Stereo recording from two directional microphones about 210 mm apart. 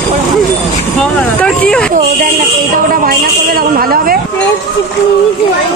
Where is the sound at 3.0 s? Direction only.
45° right (ahead or behind).